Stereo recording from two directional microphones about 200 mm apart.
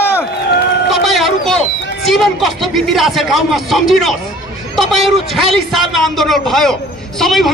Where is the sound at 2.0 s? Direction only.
Centre (ahead or behind).